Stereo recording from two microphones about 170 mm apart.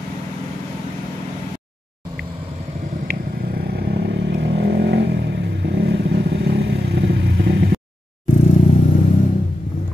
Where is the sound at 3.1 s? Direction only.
60° right (ahead or behind); by 7.7 s 80° right.